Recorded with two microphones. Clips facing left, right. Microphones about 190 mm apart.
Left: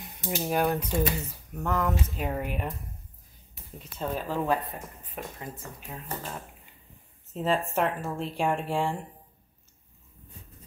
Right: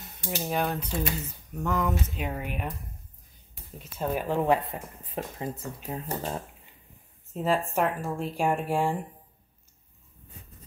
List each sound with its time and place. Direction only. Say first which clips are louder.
0.0 s speech: left 2 dB; 15° left (ahead or behind)
3.7 s speech: right 2 dB; 10° right (ahead or behind); by 6.3 s 35° right (ahead or behind)
7.3 s speech: right 1 dB; 10° right (ahead or behind)